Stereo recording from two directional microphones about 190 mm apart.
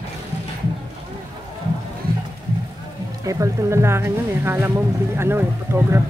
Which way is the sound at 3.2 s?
15° right (ahead or behind).